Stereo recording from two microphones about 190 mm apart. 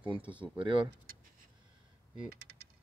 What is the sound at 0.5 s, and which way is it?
Speech, 25° right (ahead or behind).